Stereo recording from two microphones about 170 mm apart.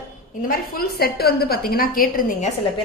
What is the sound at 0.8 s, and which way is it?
A woman's voice, 65° left (ahead or behind).